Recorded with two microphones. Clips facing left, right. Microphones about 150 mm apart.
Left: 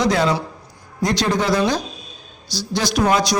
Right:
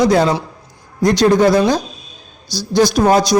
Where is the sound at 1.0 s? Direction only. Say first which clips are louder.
Right 8 dB; 50° right (ahead or behind).